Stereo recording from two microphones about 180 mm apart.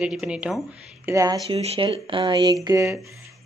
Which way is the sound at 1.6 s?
30° right (ahead or behind).